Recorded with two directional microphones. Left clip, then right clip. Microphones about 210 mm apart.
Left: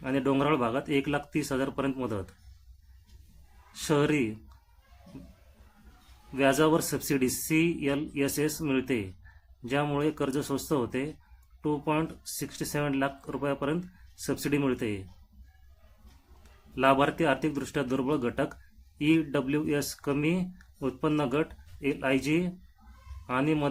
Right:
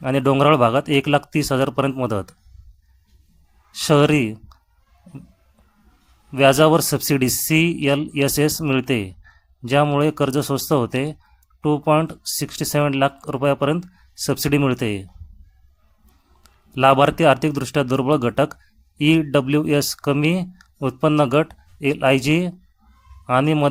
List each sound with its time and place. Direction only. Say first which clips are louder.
0.0 s speech: right 11 dB; 45° right (ahead or behind)
3.7 s speech: right 11 dB; 40° right (ahead or behind)
6.3 s speech: right 10 dB; 45° right (ahead or behind)
16.7 s a man's voice: right 10 dB; 45° right (ahead or behind)